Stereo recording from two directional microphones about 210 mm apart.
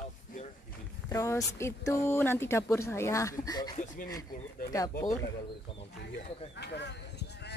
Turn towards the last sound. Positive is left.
turn(degrees=55)  # may be behind; listen again after turning